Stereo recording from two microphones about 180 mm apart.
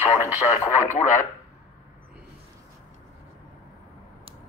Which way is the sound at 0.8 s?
40° left (ahead or behind).